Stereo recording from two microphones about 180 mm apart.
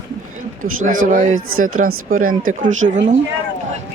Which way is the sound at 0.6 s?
45° right (ahead or behind).